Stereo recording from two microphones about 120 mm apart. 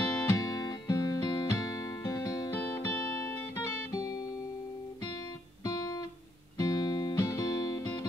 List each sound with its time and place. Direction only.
0.2 s music: 30° left (ahead or behind)
3.9 s music: 35° left (ahead or behind)
5.6 s music: 30° left (ahead or behind)